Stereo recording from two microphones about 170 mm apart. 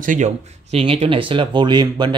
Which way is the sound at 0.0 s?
50° right (ahead or behind).